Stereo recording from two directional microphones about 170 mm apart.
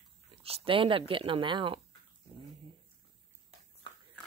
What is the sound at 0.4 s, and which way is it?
Speech, 35° right (ahead or behind).